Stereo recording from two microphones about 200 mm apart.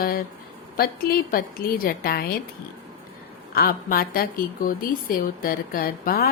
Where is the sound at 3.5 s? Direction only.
45° left (ahead or behind).